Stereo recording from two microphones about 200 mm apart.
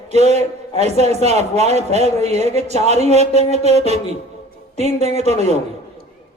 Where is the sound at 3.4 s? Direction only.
30° left (ahead or behind).